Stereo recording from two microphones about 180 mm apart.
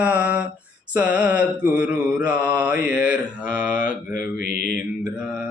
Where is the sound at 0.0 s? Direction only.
5° right (ahead or behind).